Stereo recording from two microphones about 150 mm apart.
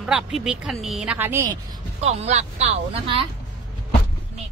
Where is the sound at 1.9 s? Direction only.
45° right (ahead or behind).